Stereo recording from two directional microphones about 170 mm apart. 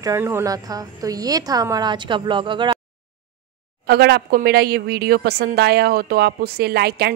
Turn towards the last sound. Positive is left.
turn(degrees=-70)  # may be behind; listen again after turning